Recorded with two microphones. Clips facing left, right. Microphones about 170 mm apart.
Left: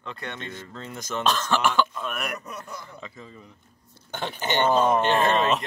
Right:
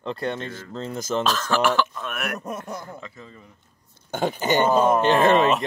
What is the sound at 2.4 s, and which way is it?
Speech, 50° right (ahead or behind).